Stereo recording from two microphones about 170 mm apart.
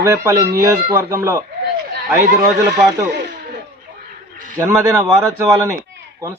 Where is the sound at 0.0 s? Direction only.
15° right (ahead or behind).